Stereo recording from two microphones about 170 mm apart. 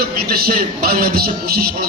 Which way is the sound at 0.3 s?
60° right (ahead or behind).